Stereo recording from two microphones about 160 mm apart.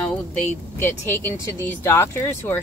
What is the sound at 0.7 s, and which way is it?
Speech, 15° left (ahead or behind).